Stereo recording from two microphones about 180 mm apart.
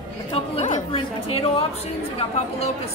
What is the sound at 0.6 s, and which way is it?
Speech, 45° left (ahead or behind).